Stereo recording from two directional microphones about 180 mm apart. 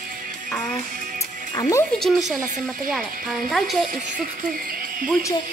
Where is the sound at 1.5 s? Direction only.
15° left (ahead or behind).